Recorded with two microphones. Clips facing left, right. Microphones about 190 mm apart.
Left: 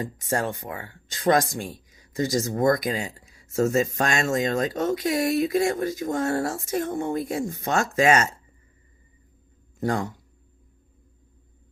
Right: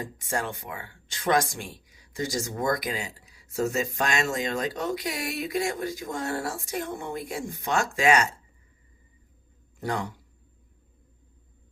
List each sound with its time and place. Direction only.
0.3 s speech: 40° left (ahead or behind)
9.8 s speech: 45° left (ahead or behind)